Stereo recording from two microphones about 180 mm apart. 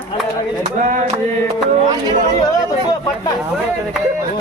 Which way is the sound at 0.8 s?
45° right (ahead or behind).